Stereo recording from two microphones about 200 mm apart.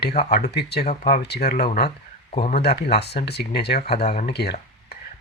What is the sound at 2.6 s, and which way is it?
Speech, 55° left (ahead or behind).